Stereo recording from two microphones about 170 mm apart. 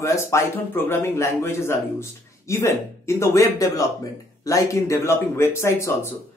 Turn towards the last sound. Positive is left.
turn(degrees=15)  # may be behind; listen again after turning